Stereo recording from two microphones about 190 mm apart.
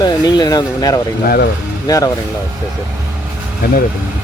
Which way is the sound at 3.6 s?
55° left (ahead or behind).